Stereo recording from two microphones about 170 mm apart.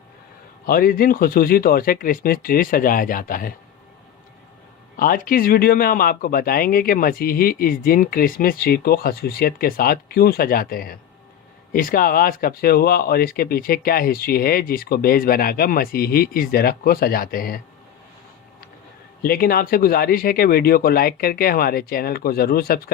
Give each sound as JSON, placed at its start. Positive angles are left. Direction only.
{"t": 0.6, "sound": "a man's voice", "side_deg": 60}
{"t": 4.9, "sound": "a man's voice", "side_deg": 55}
{"t": 19.2, "sound": "a man's voice", "side_deg": 60}